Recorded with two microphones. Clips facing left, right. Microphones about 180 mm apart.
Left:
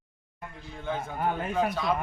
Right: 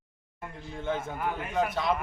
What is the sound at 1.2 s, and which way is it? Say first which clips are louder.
Speech: left 4 dB; 30° left (ahead or behind).